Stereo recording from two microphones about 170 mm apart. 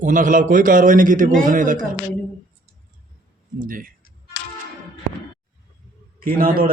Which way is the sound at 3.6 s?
55° right (ahead or behind).